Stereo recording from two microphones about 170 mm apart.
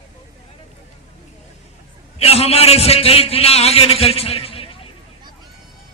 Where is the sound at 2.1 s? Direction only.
35° left (ahead or behind).